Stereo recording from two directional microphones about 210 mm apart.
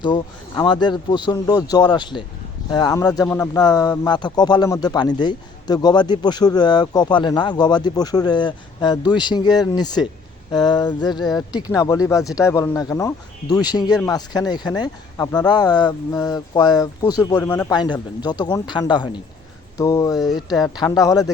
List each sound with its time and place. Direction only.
0.0 s speech: 20° left (ahead or behind)